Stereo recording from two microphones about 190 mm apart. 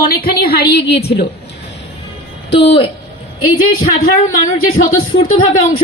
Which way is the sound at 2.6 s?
30° left (ahead or behind).